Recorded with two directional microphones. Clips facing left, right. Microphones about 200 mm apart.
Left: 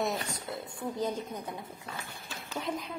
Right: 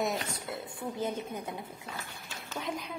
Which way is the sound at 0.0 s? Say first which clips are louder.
Even; centre (ahead or behind).